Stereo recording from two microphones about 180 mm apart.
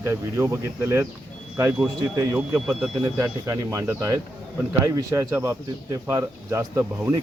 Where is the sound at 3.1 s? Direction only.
15° right (ahead or behind).